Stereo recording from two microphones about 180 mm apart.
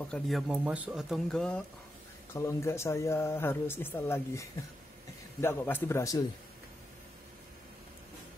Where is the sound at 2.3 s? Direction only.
15° left (ahead or behind).